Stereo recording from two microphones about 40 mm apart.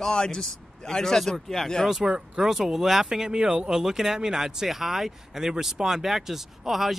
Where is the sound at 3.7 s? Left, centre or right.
Centre.